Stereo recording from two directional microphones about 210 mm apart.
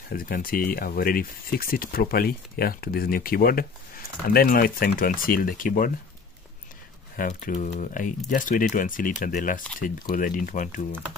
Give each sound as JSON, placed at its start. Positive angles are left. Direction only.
{"t": 0.1, "sound": "speech", "side_deg": 45}
{"t": 7.2, "sound": "speech", "side_deg": 40}